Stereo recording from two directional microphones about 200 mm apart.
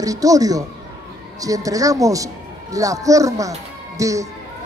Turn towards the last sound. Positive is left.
turn(degrees=-15)  # may be behind; listen again after turning